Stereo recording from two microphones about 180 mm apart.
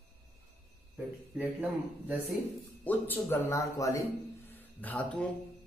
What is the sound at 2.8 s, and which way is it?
Speech, 10° left (ahead or behind).